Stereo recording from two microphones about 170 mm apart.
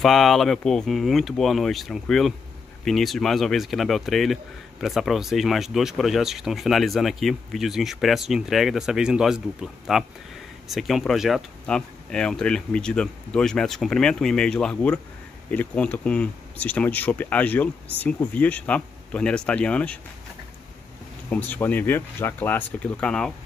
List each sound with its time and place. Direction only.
0.0 s speech: centre (ahead or behind)
21.3 s speech: 10° left (ahead or behind)